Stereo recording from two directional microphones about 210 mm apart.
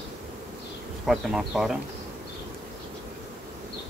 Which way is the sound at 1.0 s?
Centre (ahead or behind).